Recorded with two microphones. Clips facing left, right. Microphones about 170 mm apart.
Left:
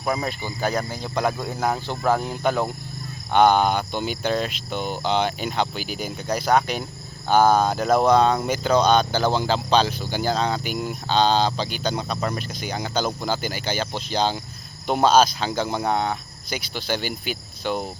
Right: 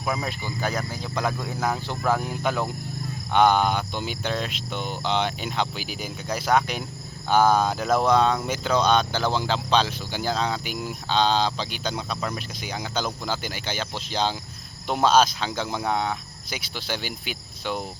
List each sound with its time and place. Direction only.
0.4 s speech: 30° left (ahead or behind)
2.0 s speech: centre (ahead or behind)
6.3 s speech: 35° left (ahead or behind)
7.3 s speech: centre (ahead or behind)